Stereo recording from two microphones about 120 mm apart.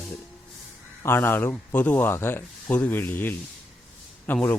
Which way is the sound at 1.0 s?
20° left (ahead or behind).